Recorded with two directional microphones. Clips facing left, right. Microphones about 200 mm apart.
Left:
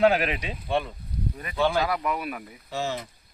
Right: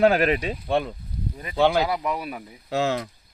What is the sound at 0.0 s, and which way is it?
Speech, 45° right (ahead or behind).